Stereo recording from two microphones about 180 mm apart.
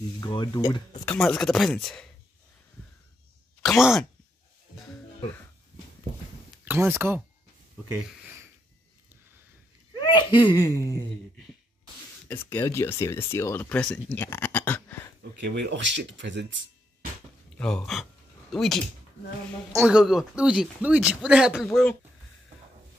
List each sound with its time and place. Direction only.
0.2 s speech: 25° left (ahead or behind)
1.1 s speech: centre (ahead or behind)
3.6 s speech: centre (ahead or behind)
6.7 s speech: 10° right (ahead or behind)
9.9 s speech: 25° left (ahead or behind)
12.3 s speech: 10° left (ahead or behind)
15.4 s speech: 80° right
17.6 s speech: 5° left (ahead or behind)